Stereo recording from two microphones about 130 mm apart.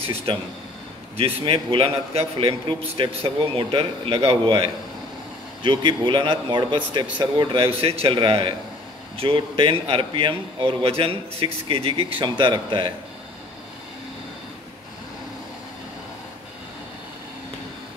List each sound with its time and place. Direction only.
0.3 s a man's voice: 40° right (ahead or behind)